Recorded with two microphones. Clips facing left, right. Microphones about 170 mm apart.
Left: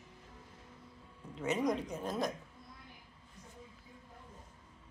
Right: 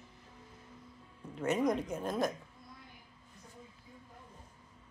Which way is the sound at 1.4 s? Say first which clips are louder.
Right 2 dB; centre (ahead or behind).